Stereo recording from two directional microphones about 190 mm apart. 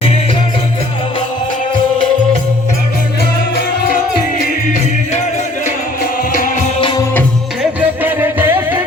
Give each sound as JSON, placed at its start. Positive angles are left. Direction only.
{"t": 3.5, "sound": "music", "side_deg": 50}
{"t": 7.6, "sound": "music", "side_deg": -10}